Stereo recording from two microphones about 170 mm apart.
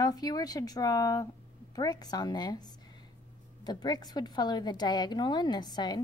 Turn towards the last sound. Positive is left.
turn(degrees=25)  # may be behind; listen again after turning